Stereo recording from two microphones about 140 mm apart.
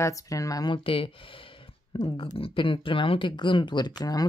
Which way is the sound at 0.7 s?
40° left (ahead or behind).